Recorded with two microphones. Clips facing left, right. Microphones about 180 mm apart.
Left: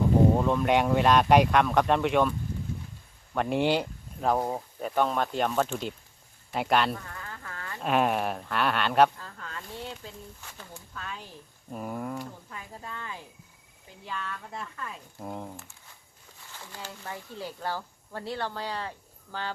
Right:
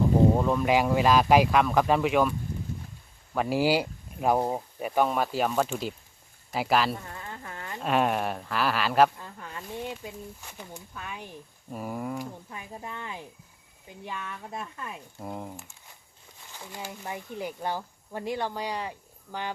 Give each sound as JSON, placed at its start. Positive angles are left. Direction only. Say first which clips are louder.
{"t": 0.3, "sound": "speech", "louder": "even", "side_deg": 0}
{"t": 3.3, "sound": "speech", "louder": "right 1 dB", "side_deg": -5}
{"t": 6.9, "sound": "insect", "louder": "right 1 dB", "side_deg": -20}
{"t": 7.8, "sound": "speech", "louder": "even", "side_deg": 0}
{"t": 9.1, "sound": "speech", "louder": "right 1 dB", "side_deg": -15}
{"t": 11.7, "sound": "speech", "louder": "right 1 dB", "side_deg": -5}
{"t": 15.2, "sound": "speech", "louder": "even", "side_deg": -5}
{"t": 16.5, "sound": "speech", "louder": "right 3 dB", "side_deg": -15}